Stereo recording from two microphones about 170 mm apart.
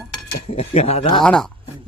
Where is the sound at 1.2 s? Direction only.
5° left (ahead or behind).